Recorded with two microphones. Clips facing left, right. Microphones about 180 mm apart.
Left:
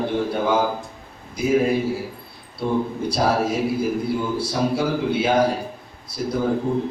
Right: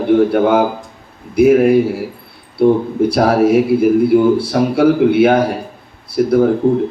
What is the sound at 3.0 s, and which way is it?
A man's voice, 60° right (ahead or behind).